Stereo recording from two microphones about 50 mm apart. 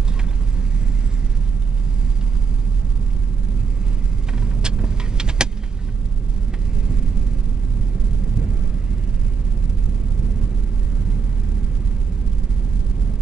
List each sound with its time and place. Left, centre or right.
4.3 s vehicle: centre